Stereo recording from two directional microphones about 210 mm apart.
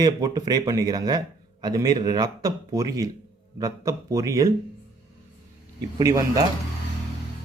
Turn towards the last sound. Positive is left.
turn(degrees=-15)  # may be behind; listen again after turning